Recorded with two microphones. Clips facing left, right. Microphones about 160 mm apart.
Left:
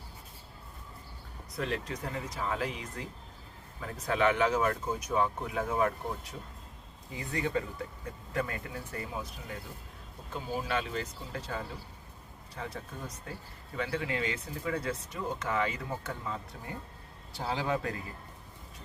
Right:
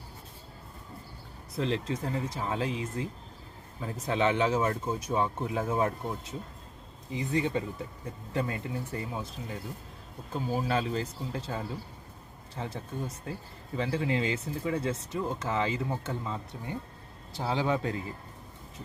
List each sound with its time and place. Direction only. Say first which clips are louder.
1.5 s speech: right 4 dB; 25° right (ahead or behind)
10.7 s speech: right 4 dB; 35° right (ahead or behind)